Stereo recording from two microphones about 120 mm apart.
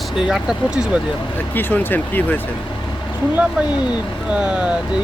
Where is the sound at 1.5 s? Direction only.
15° left (ahead or behind).